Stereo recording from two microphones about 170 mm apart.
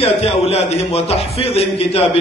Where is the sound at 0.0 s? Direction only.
35° left (ahead or behind).